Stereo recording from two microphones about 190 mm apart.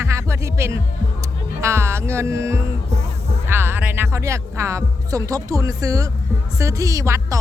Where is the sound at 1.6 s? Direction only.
15° right (ahead or behind).